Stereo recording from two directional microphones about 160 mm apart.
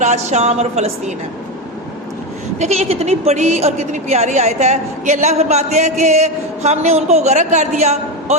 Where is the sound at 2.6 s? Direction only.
40° right (ahead or behind).